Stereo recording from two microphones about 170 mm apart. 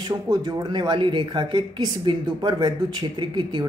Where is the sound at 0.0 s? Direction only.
25° right (ahead or behind).